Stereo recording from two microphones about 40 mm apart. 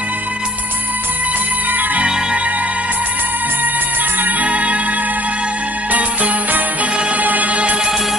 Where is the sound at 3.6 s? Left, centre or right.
Right.